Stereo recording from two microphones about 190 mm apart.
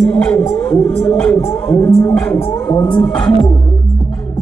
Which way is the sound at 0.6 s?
10° left (ahead or behind).